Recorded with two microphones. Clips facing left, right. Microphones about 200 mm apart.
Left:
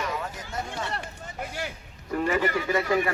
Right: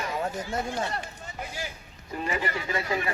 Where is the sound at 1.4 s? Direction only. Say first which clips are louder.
Left 3 dB; 65° left (ahead or behind).